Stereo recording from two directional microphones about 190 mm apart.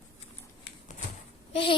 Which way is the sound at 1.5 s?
30° left (ahead or behind).